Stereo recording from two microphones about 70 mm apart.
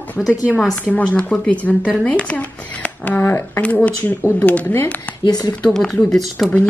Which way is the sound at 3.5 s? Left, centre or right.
Centre.